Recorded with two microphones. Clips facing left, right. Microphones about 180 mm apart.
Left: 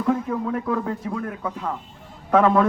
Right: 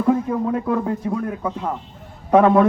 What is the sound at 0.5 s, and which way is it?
A man's voice, 20° right (ahead or behind).